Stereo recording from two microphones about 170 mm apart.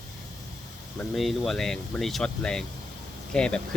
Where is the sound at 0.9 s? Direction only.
Centre (ahead or behind).